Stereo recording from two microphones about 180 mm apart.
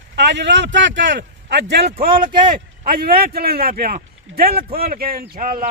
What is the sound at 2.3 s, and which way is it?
Speech, 25° right (ahead or behind).